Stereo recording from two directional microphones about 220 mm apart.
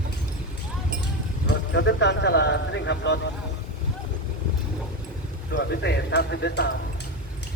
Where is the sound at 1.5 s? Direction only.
55° left (ahead or behind).